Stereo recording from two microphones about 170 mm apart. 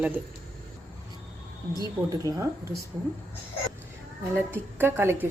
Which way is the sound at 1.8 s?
20° right (ahead or behind).